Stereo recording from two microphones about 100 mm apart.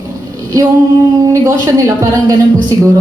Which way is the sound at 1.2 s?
35° right (ahead or behind).